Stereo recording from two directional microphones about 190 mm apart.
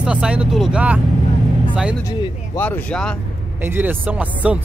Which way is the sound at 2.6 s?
10° left (ahead or behind).